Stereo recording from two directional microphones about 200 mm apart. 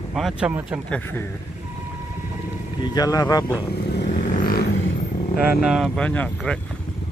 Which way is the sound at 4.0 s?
50° left (ahead or behind).